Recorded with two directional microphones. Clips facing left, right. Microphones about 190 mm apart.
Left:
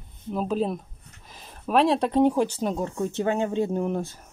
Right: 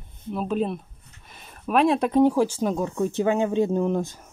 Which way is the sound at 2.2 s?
20° left (ahead or behind).